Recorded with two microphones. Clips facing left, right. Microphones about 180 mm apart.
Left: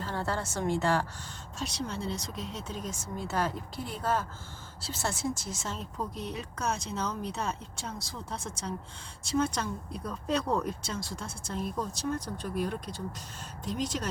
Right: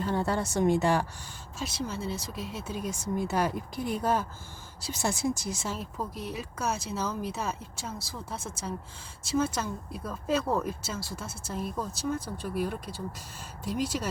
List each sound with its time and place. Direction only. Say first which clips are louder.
0.0 s a woman's voice: right 5 dB; 15° right (ahead or behind)
1.5 s speech: right 1 dB; 5° right (ahead or behind)